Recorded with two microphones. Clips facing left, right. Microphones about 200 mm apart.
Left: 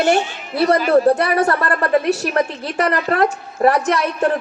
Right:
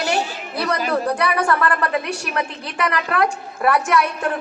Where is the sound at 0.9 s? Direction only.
40° left (ahead or behind).